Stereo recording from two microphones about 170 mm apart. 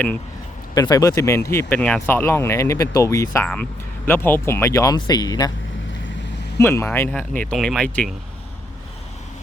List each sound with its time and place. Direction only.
0.7 s speech: 20° left (ahead or behind)
6.6 s speech: 15° left (ahead or behind)